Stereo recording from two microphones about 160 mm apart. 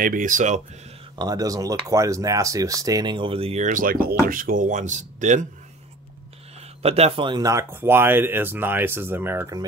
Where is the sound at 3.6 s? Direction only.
60° right (ahead or behind).